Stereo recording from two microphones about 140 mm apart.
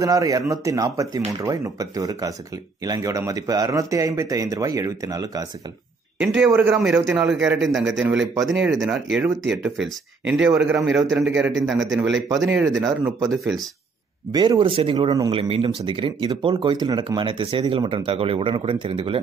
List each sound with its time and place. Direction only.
0.0 s speech: 25° right (ahead or behind)
6.1 s a man's voice: 5° right (ahead or behind)
12.6 s speech: 20° right (ahead or behind)
13.4 s a man's voice: centre (ahead or behind)
14.3 s speech: 30° right (ahead or behind)